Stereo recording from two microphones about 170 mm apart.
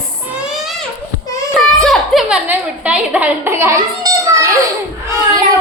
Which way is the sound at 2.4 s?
10° right (ahead or behind).